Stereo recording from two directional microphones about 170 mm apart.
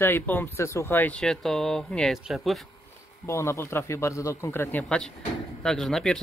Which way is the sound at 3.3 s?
20° left (ahead or behind).